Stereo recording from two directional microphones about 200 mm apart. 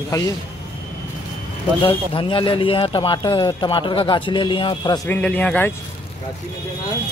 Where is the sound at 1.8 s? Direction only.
25° left (ahead or behind).